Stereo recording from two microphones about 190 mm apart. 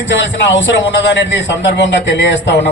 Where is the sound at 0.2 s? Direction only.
70° left (ahead or behind).